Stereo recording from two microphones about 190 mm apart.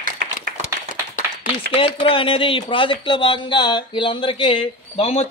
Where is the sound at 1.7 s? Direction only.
30° left (ahead or behind).